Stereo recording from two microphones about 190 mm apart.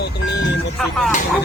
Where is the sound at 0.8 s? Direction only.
Centre (ahead or behind).